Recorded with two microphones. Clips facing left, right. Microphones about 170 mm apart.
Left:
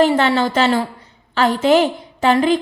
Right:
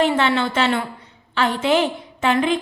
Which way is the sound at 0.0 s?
40° left (ahead or behind).